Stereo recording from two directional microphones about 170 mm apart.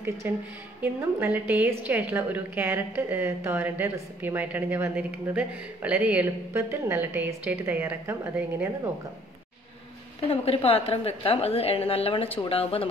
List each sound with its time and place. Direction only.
0.2 s a woman's voice: 15° right (ahead or behind)
1.5 s a woman's voice: 15° right (ahead or behind)
10.2 s a woman's voice: 35° left (ahead or behind)